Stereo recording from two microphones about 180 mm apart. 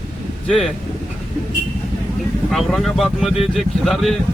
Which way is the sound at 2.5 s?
Centre (ahead or behind).